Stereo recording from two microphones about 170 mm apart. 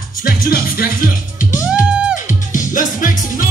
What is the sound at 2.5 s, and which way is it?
Music, 50° left (ahead or behind).